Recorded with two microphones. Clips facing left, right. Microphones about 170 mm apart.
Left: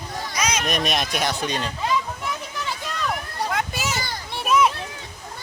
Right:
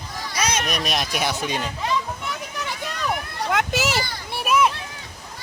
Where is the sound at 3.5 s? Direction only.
75° right (ahead or behind).